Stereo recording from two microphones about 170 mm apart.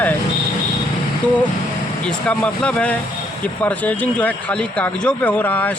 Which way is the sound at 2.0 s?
5° left (ahead or behind).